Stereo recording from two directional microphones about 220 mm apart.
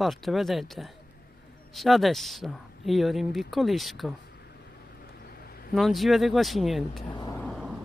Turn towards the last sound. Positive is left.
turn(degrees=-5)  # may be behind; listen again after turning